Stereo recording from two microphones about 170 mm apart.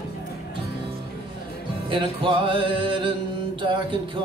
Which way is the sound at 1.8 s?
30° right (ahead or behind).